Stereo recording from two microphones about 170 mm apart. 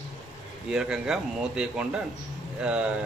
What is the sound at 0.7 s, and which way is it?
Speech, 5° right (ahead or behind).